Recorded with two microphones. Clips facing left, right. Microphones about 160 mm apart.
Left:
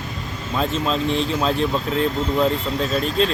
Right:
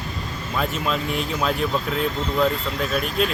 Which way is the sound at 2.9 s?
30° left (ahead or behind).